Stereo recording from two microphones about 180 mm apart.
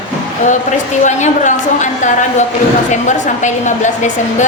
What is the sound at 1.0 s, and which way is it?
A woman's voice, 45° left (ahead or behind).